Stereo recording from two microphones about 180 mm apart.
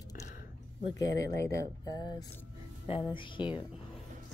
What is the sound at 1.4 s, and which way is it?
Speech, 15° left (ahead or behind).